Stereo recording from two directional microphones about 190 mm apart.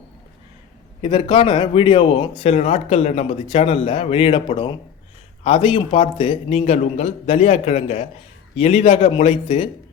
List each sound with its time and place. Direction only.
1.0 s a man's voice: 30° left (ahead or behind)